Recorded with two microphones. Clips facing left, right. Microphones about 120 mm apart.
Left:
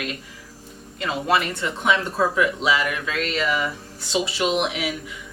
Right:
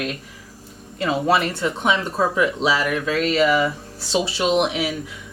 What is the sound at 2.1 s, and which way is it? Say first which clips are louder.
Speech: right 1 dB; 25° right (ahead or behind).